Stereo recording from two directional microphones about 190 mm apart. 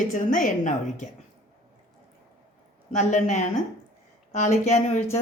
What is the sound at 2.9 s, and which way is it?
A woman's voice, 40° left (ahead or behind).